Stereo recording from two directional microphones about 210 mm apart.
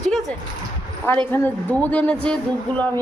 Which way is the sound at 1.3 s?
10° left (ahead or behind).